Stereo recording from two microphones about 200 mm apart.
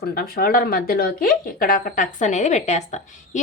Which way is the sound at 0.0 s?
50° left (ahead or behind).